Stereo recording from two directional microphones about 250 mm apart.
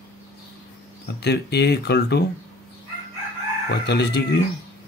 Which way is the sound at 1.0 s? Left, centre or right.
Left.